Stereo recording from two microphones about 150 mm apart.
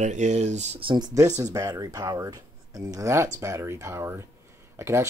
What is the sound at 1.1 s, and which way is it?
Speech, 25° right (ahead or behind).